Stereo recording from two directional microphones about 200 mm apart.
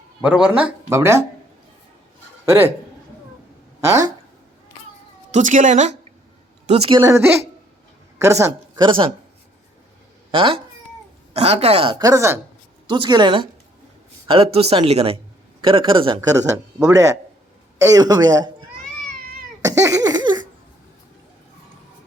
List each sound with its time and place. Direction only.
0.2 s speech: 5° right (ahead or behind)
2.5 s speech: 10° right (ahead or behind)
3.8 s speech: 15° right (ahead or behind)
5.3 s a woman's voice: 40° right (ahead or behind)
7.0 s speech: 15° right (ahead or behind)
10.3 s speech: 25° right (ahead or behind)
19.6 s cough: 15° right (ahead or behind)